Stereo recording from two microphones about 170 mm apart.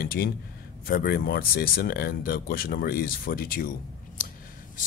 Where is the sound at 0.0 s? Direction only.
60° left (ahead or behind).